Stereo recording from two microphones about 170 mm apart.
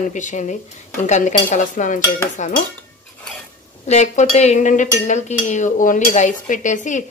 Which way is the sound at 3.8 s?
40° left (ahead or behind).